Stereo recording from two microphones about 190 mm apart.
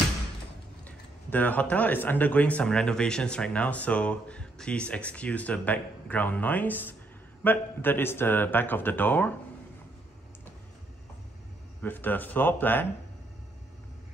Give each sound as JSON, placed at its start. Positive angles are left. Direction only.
{"t": 0.8, "sound": "speech", "side_deg": 10}
{"t": 11.8, "sound": "speech", "side_deg": 10}